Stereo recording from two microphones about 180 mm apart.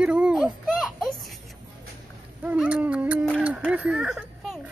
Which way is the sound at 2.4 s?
5° right (ahead or behind).